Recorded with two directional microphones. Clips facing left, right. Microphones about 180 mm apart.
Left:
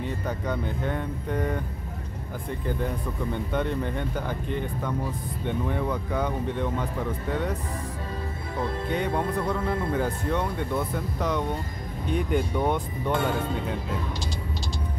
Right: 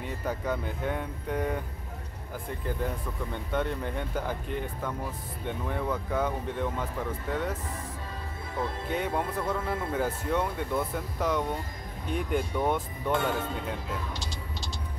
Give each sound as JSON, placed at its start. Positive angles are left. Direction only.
{"t": 0.2, "sound": "speech", "side_deg": -5}
{"t": 3.5, "sound": "speech", "side_deg": -5}
{"t": 8.9, "sound": "speech", "side_deg": -5}